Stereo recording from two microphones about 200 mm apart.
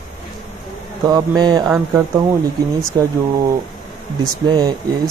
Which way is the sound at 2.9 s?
20° right (ahead or behind).